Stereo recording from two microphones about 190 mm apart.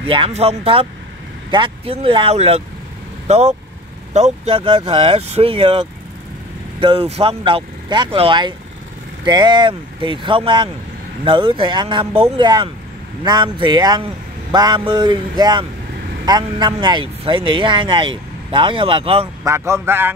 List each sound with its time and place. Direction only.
0.0 s speech: 30° right (ahead or behind)
19.4 s speech: 15° right (ahead or behind)